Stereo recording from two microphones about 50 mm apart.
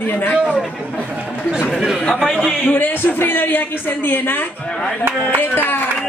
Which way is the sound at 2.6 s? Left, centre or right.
Left.